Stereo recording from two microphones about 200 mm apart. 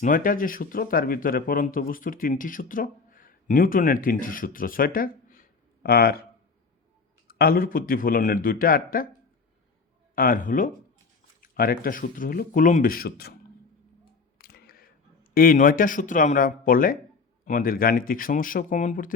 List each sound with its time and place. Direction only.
0.0 s speech: 45° left (ahead or behind)
7.3 s speech: 50° left (ahead or behind)
10.2 s speech: 45° left (ahead or behind)
14.3 s a sound: 50° left (ahead or behind)
17.4 s speech: 45° left (ahead or behind)